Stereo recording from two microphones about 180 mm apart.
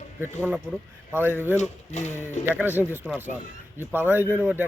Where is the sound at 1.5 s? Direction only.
40° left (ahead or behind).